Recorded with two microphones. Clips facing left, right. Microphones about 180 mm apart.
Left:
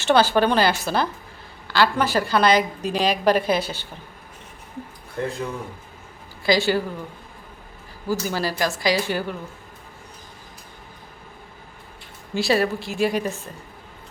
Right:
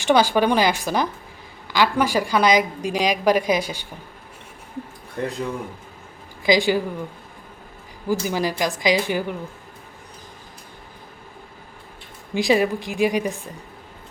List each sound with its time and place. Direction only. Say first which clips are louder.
0.0 s a woman's voice: even; 10° right (ahead or behind)
6.4 s a woman's voice: right 2 dB; 15° right (ahead or behind)
8.0 s a woman's voice: right 2 dB; 15° right (ahead or behind)
12.3 s a woman's voice: right 2 dB; 15° right (ahead or behind)